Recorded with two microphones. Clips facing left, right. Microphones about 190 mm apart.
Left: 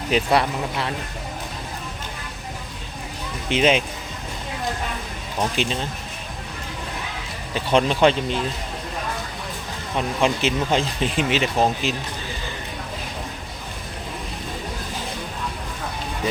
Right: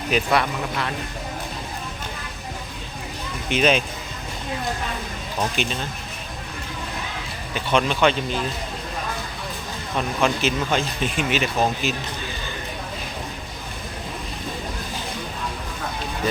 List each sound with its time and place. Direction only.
0.1 s speech: 30° left (ahead or behind)
3.5 s speech: 20° left (ahead or behind)
5.6 s speech: 30° left (ahead or behind)
7.5 s speech: 30° left (ahead or behind)
10.2 s speech: 25° left (ahead or behind)